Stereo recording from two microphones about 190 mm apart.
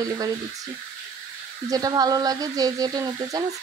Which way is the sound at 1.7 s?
20° right (ahead or behind).